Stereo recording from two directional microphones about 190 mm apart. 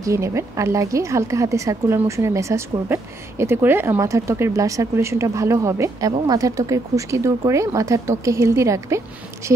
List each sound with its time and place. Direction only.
0.0 s a woman's voice: 15° right (ahead or behind)